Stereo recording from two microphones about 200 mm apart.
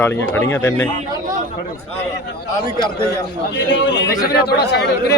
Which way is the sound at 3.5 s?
60° left (ahead or behind).